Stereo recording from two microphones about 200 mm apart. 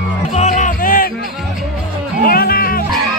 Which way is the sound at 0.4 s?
35° left (ahead or behind).